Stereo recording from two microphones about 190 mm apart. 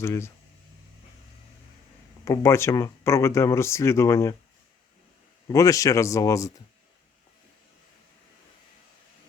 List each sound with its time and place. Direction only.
0.0 s speech: 15° left (ahead or behind)
2.2 s speech: 15° left (ahead or behind)
5.5 s speech: 20° left (ahead or behind)